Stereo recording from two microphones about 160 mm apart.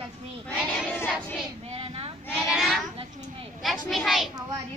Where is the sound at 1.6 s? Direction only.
35° right (ahead or behind).